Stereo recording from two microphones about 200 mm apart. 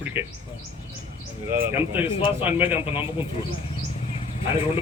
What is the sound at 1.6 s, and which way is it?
Speech, 10° right (ahead or behind).